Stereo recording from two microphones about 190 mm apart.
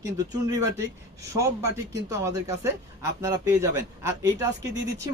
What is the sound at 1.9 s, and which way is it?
A man's voice, 15° right (ahead or behind).